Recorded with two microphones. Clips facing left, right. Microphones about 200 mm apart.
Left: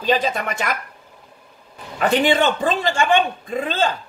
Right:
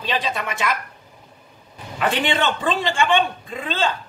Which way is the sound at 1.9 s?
45° left (ahead or behind).